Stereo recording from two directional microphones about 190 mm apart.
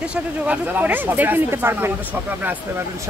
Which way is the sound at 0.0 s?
5° right (ahead or behind).